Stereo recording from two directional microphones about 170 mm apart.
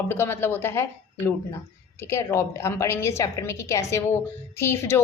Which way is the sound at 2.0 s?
15° left (ahead or behind).